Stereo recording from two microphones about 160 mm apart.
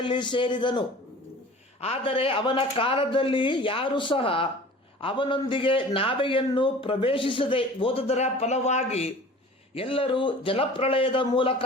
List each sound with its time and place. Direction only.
0.0 s a man's voice: 30° left (ahead or behind)